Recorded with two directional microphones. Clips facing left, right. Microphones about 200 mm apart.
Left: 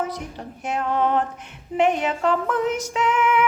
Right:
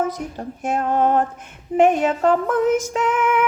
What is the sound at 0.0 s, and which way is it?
Music, 45° right (ahead or behind).